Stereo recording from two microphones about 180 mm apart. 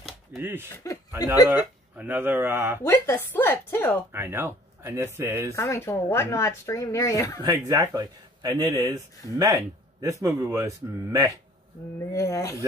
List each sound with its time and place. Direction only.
0.4 s speech: 10° right (ahead or behind)
1.2 s speech: 20° left (ahead or behind)
1.5 s speech: 10° right (ahead or behind)
2.9 s speech: 10° left (ahead or behind)
4.1 s speech: 10° right (ahead or behind)
5.5 s speech: 15° left (ahead or behind)
7.4 s speech: 20° right (ahead or behind)
10.0 s speech: 20° right (ahead or behind)
12.1 s speech: 15° left (ahead or behind)